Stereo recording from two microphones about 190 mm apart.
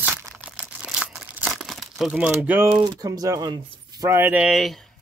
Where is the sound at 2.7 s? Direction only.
20° right (ahead or behind); by 4.9 s centre (ahead or behind).